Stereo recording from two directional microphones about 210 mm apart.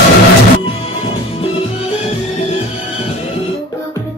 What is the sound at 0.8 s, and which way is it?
Music, 25° left (ahead or behind).